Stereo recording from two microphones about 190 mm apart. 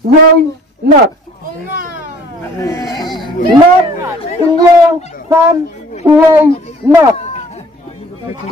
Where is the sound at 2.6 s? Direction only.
15° left (ahead or behind).